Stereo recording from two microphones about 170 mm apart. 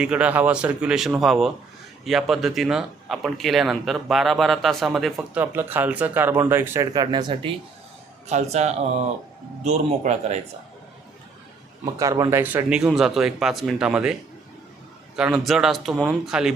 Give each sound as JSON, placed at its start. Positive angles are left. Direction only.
{"t": 0.0, "sound": "speech", "side_deg": -5}
{"t": 5.4, "sound": "speech", "side_deg": -10}
{"t": 8.3, "sound": "a man's voice", "side_deg": -40}
{"t": 11.9, "sound": "speech", "side_deg": -20}